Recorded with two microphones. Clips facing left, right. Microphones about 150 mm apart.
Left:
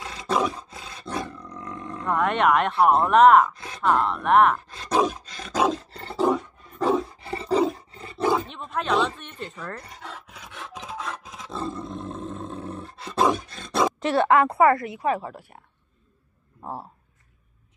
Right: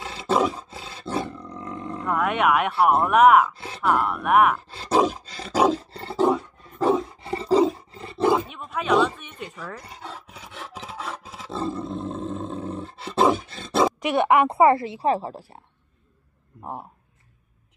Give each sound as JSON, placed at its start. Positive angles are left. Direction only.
{"t": 0.0, "sound": "roar", "side_deg": -30}
{"t": 1.5, "sound": "roaring cats", "side_deg": -30}
{"t": 2.0, "sound": "speech", "side_deg": -5}
{"t": 3.5, "sound": "groan", "side_deg": -30}
{"t": 3.8, "sound": "speech", "side_deg": -10}
{"t": 4.6, "sound": "roar", "side_deg": -30}
{"t": 6.8, "sound": "roar", "side_deg": 0}
{"t": 7.2, "sound": "roar", "side_deg": -30}
{"t": 8.3, "sound": "speech", "side_deg": -10}
{"t": 9.8, "sound": "roar", "side_deg": -35}
{"t": 13.9, "sound": "speech", "side_deg": -15}